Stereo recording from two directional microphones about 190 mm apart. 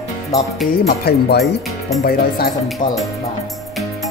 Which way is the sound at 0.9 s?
55° left (ahead or behind).